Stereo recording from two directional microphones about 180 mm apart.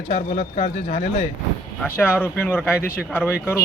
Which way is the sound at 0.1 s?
35° left (ahead or behind).